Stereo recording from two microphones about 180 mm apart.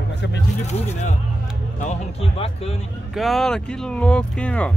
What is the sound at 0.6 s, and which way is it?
Speech, 40° left (ahead or behind).